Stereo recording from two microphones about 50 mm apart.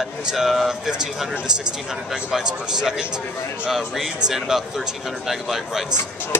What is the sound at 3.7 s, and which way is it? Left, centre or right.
Speech, centre.